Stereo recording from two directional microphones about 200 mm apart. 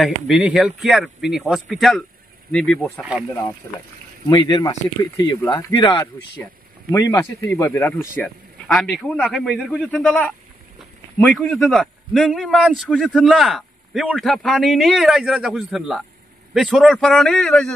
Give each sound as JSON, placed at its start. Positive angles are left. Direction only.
{"t": 0.0, "sound": "a man's voice", "side_deg": -5}
{"t": 3.6, "sound": "a man's voice", "side_deg": 15}